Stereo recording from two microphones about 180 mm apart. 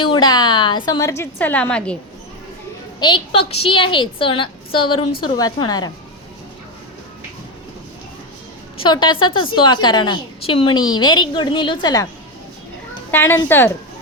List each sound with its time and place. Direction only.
0.0 s a woman's voice: 25° left (ahead or behind); by 2.0 s 5° left (ahead or behind)
3.0 s a woman's voice: 30° left (ahead or behind)
8.8 s a woman's voice: 25° left (ahead or behind)
13.1 s a woman's voice: 10° left (ahead or behind)